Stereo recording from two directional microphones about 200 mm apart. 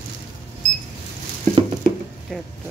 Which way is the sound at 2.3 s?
Centre (ahead or behind).